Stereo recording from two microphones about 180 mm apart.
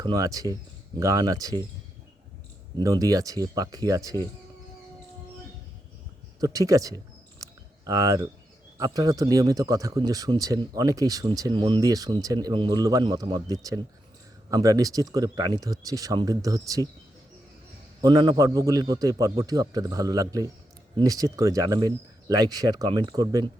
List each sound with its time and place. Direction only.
0.0 s speech: 20° right (ahead or behind)
2.8 s speech: 20° right (ahead or behind)
6.4 s speech: 20° right (ahead or behind)
18.0 s speech: 20° right (ahead or behind)